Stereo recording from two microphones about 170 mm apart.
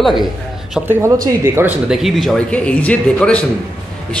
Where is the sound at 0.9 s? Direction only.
15° right (ahead or behind); by 3.4 s 5° left (ahead or behind).